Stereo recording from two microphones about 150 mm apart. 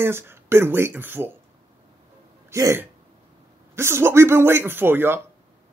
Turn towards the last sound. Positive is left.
turn(degrees=-15)  # may be behind; listen again after turning